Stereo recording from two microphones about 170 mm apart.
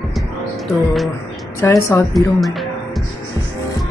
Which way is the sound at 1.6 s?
15° left (ahead or behind).